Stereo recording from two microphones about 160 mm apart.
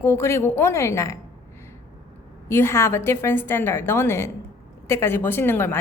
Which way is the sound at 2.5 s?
15° left (ahead or behind).